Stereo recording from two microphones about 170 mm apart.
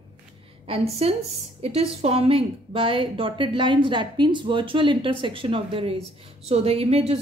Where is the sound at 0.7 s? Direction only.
35° right (ahead or behind).